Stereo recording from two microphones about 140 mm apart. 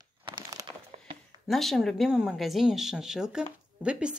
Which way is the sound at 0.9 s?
50° right (ahead or behind).